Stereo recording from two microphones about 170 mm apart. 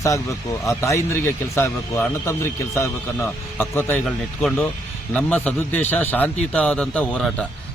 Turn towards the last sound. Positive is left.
turn(degrees=5)  # may be behind; listen again after turning